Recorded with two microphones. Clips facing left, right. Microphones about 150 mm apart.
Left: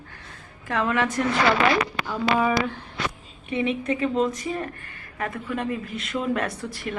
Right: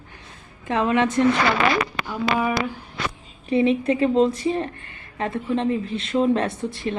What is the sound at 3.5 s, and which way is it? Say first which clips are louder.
A woman's voice: right 6 dB; 30° right (ahead or behind).